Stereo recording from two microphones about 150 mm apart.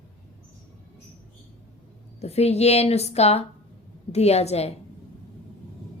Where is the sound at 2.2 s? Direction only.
45° left (ahead or behind).